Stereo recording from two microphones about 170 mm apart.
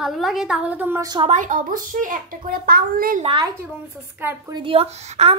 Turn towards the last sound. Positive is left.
turn(degrees=-40)  # may be behind; listen again after turning